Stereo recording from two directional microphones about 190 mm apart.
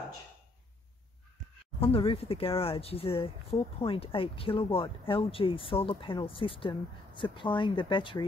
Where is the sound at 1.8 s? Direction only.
30° left (ahead or behind).